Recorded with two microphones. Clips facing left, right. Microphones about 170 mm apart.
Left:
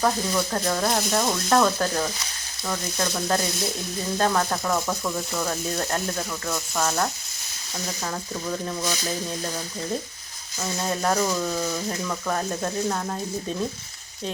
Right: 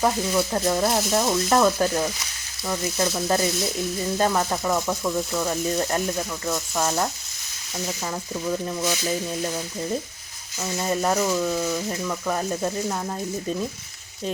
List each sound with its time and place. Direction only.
0.0 s speech: 10° right (ahead or behind)
10.8 s speech: 5° right (ahead or behind)